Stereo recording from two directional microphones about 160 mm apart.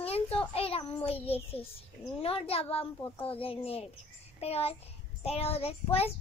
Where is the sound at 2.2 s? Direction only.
35° left (ahead or behind).